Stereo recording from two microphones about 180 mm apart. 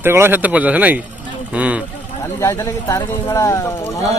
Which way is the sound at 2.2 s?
15° left (ahead or behind).